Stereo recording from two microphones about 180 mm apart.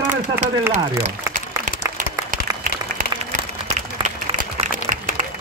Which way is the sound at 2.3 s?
50° right (ahead or behind).